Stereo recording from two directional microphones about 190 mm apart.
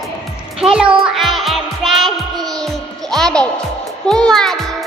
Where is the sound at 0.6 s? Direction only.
5° right (ahead or behind).